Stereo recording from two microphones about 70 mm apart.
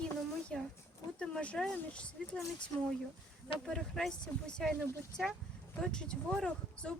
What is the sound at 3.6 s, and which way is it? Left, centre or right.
Speech, centre.